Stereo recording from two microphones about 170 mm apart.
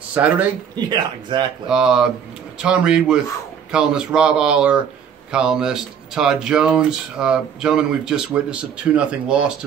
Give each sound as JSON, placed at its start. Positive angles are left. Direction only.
{"t": 0.1, "sound": "a man's voice", "side_deg": -10}
{"t": 0.7, "sound": "speech", "side_deg": -25}
{"t": 1.7, "sound": "speech", "side_deg": -5}